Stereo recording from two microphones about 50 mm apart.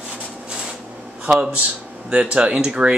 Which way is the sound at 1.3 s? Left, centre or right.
Right.